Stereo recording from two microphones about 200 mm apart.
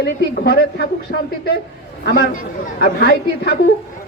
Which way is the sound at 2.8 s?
50° left (ahead or behind).